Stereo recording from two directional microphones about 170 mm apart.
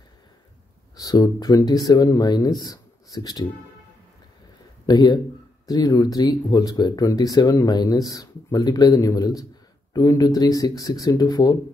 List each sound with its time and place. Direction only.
0.9 s speech: 20° left (ahead or behind)
4.8 s speech: 25° left (ahead or behind)